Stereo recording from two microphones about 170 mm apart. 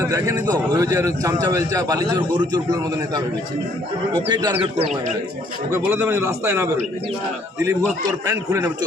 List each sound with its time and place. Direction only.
0.0 s a man's voice: 20° right (ahead or behind)
4.1 s a man's voice: 25° right (ahead or behind)
5.7 s a man's voice: 15° right (ahead or behind)